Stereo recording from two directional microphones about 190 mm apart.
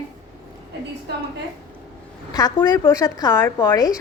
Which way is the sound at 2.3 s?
20° left (ahead or behind).